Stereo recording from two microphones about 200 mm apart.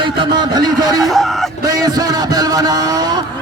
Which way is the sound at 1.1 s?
Centre (ahead or behind).